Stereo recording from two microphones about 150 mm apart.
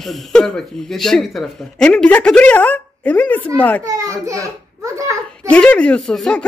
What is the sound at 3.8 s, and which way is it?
A child's voice, 25° right (ahead or behind).